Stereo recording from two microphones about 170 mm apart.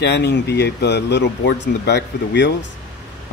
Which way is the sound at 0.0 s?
80° left.